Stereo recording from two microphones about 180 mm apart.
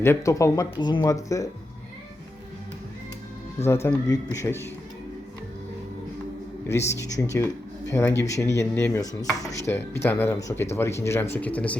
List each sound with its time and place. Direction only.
0.0 s speech: 15° left (ahead or behind)
3.8 s speech: 20° left (ahead or behind)
6.7 s speech: 15° left (ahead or behind)